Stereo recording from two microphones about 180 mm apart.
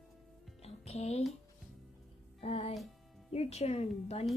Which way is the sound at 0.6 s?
35° left (ahead or behind).